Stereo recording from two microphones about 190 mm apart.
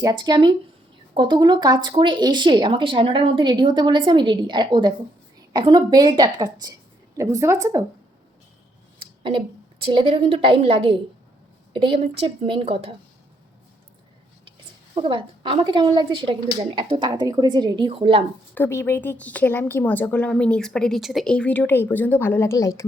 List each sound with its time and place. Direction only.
0.0 s a woman's voice: 20° right (ahead or behind)
9.8 s a woman's voice: 25° right (ahead or behind)
14.9 s speech: 25° right (ahead or behind)
18.5 s a woman's voice: 10° left (ahead or behind)